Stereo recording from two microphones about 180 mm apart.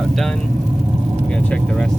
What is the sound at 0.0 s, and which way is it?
Speech, centre (ahead or behind).